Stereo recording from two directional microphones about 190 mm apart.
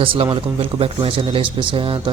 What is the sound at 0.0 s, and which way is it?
A man's voice, 30° right (ahead or behind).